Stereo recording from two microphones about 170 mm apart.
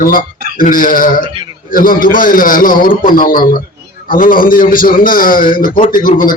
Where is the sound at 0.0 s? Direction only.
55° left (ahead or behind).